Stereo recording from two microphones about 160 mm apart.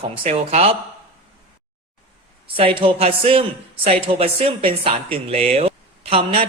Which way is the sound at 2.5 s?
35° right (ahead or behind).